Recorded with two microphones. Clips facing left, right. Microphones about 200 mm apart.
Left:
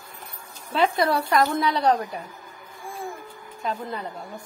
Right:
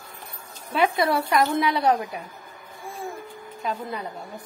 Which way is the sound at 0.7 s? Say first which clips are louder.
Even; 20° right (ahead or behind).